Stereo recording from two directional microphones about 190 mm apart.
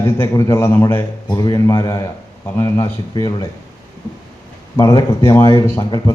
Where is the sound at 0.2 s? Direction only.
15° left (ahead or behind).